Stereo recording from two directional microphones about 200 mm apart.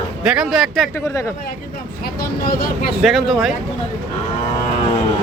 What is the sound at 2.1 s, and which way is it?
Vehicle, 50° left (ahead or behind).